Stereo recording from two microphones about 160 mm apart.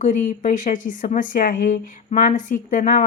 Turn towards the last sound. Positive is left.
turn(degrees=60)  # may be behind; listen again after turning